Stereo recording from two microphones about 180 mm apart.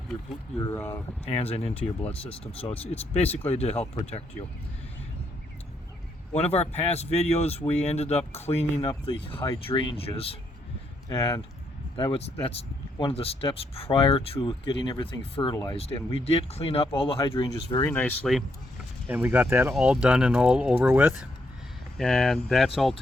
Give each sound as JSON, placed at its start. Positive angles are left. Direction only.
{"t": 0.7, "sound": "speech", "side_deg": 10}
{"t": 1.3, "sound": "speech", "side_deg": 35}
{"t": 1.7, "sound": "speech", "side_deg": 10}
{"t": 2.2, "sound": "speech", "side_deg": 30}
{"t": 6.3, "sound": "speech", "side_deg": 35}
{"t": 11.1, "sound": "speech", "side_deg": 20}
{"t": 11.9, "sound": "speech", "side_deg": 30}
{"t": 17.8, "sound": "speech", "side_deg": 10}
{"t": 19.0, "sound": "speech", "side_deg": -10}